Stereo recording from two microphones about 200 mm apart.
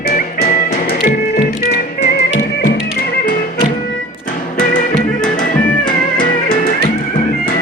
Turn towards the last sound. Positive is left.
turn(degrees=45)  # may be behind; listen again after turning